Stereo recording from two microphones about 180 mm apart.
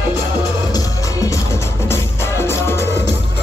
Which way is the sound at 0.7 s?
20° left (ahead or behind).